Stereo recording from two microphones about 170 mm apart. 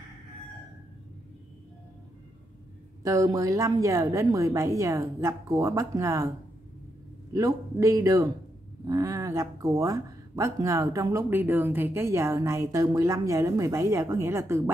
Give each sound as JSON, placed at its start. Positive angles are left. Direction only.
{"t": 3.0, "sound": "a woman's voice", "side_deg": -20}
{"t": 7.3, "sound": "a woman's voice", "side_deg": -20}